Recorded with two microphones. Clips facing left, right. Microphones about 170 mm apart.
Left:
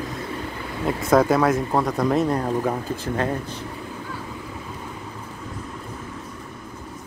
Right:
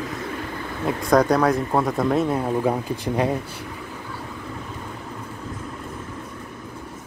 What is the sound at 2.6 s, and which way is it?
Speech, 15° right (ahead or behind).